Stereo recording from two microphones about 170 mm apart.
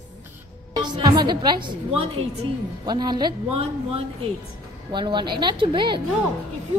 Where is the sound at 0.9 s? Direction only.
25° right (ahead or behind).